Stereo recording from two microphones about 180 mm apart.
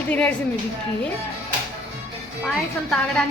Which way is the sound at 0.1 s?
5° left (ahead or behind).